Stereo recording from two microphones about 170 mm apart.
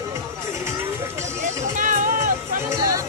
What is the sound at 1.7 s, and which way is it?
Music, 50° right (ahead or behind).